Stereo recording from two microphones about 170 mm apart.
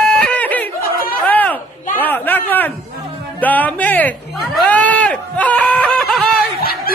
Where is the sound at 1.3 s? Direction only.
10° left (ahead or behind).